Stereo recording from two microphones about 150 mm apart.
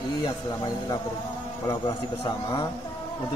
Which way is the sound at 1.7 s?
25° left (ahead or behind).